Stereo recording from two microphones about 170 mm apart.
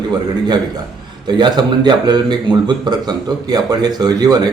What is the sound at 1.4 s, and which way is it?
A man's voice, 25° right (ahead or behind).